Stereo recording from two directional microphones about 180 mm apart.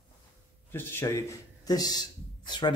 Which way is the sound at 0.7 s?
10° left (ahead or behind).